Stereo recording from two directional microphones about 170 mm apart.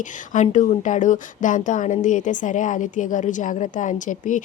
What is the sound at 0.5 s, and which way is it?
A woman's voice, 45° left (ahead or behind).